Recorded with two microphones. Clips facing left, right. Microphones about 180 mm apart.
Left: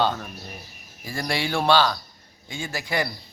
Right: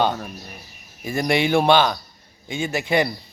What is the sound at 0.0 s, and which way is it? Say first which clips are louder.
A man's voice: right 2 dB; 15° right (ahead or behind).